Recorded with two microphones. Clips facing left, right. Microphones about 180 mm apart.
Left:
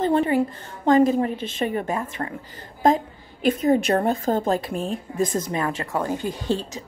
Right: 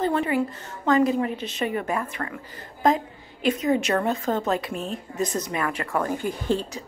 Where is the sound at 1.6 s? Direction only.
35° left (ahead or behind).